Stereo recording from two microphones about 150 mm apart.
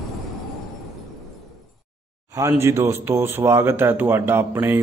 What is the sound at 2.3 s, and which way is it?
Speech, 20° right (ahead or behind).